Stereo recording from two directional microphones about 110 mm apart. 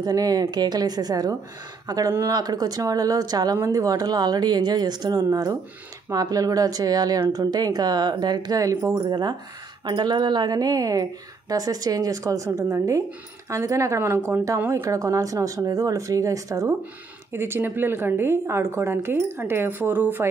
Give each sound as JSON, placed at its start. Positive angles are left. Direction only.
{"t": 0.0, "sound": "a woman's voice", "side_deg": -35}